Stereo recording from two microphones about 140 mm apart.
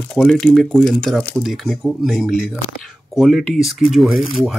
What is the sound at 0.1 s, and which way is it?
Speech, centre (ahead or behind).